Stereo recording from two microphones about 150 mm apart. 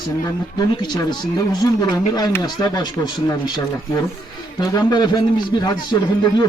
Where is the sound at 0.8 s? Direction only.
30° left (ahead or behind).